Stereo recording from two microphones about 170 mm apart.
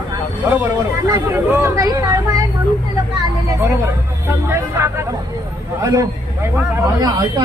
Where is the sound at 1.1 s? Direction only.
15° right (ahead or behind).